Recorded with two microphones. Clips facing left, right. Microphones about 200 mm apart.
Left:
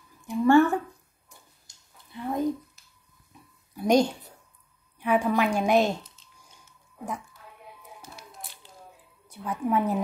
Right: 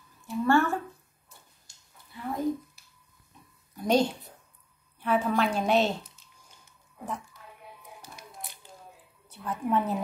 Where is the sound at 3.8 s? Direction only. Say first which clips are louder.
Left 3 dB; 15° left (ahead or behind).